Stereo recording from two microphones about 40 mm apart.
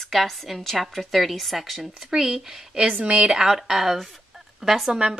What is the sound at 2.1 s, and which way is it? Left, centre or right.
Speech, centre.